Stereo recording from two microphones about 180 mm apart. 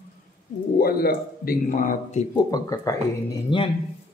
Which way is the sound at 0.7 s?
55° left (ahead or behind).